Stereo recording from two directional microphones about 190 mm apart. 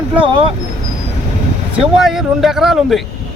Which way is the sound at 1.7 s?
Centre (ahead or behind).